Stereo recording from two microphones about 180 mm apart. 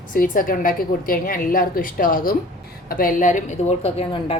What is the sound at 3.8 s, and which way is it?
Speech, 35° left (ahead or behind).